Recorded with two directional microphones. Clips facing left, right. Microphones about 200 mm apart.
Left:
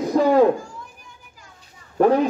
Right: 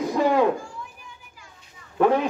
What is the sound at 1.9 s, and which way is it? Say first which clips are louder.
Speech: left 3 dB; 40° left (ahead or behind).